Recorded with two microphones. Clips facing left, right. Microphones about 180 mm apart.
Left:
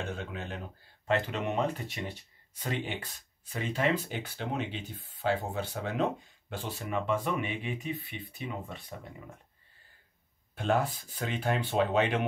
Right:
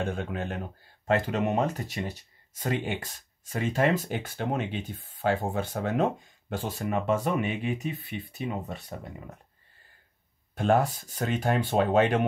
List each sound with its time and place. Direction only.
0.0 s speech: 50° right (ahead or behind)
10.5 s a sound: 50° right (ahead or behind)
11.0 s speech: 45° right (ahead or behind)